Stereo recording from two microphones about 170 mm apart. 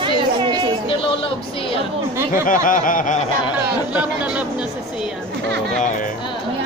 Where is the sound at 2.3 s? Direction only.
50° left (ahead or behind).